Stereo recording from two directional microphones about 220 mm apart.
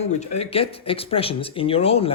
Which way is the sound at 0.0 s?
30° left (ahead or behind).